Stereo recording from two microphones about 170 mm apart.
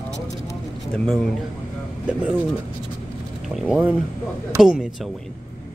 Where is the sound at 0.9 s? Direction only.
5° left (ahead or behind).